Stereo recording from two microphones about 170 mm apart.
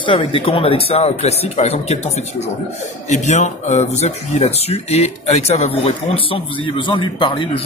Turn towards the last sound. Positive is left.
turn(degrees=30)  # may be behind; listen again after turning